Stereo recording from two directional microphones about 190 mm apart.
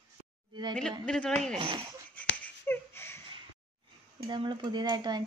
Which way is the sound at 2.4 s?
10° left (ahead or behind).